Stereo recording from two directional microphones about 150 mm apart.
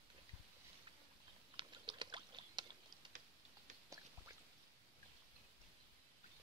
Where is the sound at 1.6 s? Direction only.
30° right (ahead or behind).